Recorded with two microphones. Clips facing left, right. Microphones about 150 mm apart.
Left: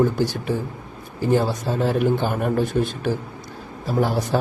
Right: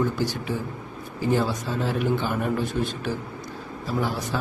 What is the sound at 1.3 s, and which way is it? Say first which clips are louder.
Speech: left 4 dB; 50° left (ahead or behind).